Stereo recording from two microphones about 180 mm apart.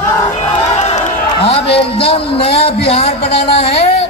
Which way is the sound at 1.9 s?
30° left (ahead or behind).